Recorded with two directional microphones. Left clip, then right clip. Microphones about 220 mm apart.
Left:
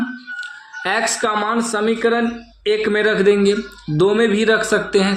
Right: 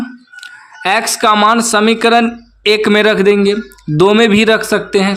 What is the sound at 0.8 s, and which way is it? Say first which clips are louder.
Speech: right 7 dB; 30° right (ahead or behind).